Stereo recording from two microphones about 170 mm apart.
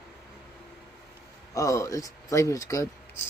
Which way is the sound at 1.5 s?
20° left (ahead or behind).